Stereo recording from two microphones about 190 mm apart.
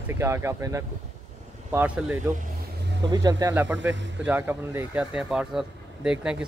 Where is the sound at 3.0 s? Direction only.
20° right (ahead or behind).